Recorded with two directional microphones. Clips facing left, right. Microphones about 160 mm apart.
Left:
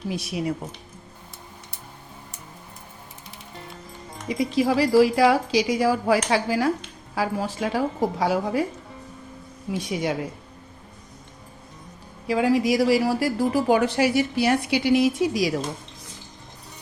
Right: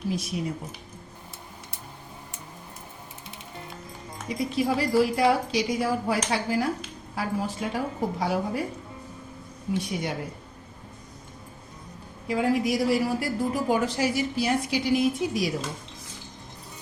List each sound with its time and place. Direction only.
0.1 s speech: 75° left (ahead or behind)
4.3 s a woman's voice: 90° left
9.7 s a woman's voice: 90° left
12.3 s a woman's voice: 90° left